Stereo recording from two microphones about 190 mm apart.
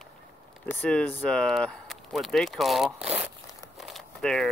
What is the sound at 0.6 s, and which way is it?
Speech, 10° left (ahead or behind).